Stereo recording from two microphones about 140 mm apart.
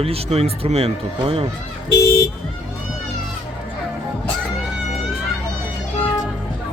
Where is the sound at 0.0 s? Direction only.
45° right (ahead or behind).